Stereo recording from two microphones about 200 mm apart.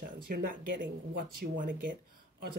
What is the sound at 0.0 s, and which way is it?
Speech, 45° right (ahead or behind).